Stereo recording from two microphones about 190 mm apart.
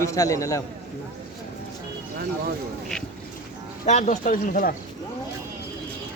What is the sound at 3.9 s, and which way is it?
Speech, 40° left (ahead or behind).